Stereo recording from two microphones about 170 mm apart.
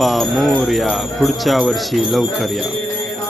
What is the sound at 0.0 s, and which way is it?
Speech, centre (ahead or behind).